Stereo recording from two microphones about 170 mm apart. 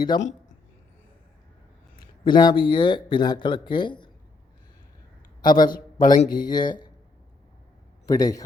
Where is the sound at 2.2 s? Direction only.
25° left (ahead or behind).